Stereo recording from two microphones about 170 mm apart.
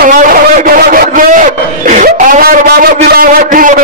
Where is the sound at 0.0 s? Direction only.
55° right (ahead or behind).